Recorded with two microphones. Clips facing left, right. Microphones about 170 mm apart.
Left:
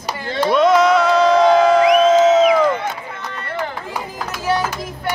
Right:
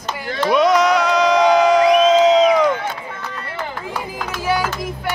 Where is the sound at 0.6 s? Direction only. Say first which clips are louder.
Left 2 dB; centre (ahead or behind).